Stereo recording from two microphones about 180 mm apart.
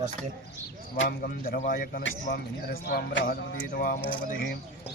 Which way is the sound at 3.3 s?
50° left (ahead or behind).